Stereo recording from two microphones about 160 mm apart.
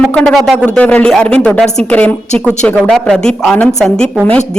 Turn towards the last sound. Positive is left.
turn(degrees=5)  # may be behind; listen again after turning